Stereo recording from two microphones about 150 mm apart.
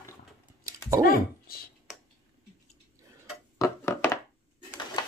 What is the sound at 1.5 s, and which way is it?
Speech, 85° left.